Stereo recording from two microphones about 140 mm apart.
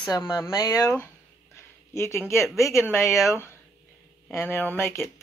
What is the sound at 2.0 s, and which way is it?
Speech, 20° left (ahead or behind).